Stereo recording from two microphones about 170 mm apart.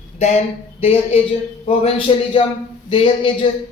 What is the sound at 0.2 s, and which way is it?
Speech, 40° left (ahead or behind).